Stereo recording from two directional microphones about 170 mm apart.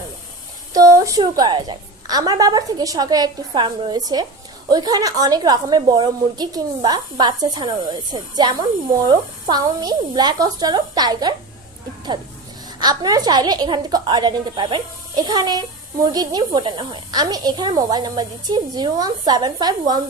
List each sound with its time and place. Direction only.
0.7 s a woman's voice: 20° right (ahead or behind)
12.8 s a woman's voice: 25° right (ahead or behind)